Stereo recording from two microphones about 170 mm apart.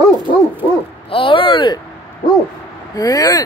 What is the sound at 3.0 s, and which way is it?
Speech, 20° left (ahead or behind).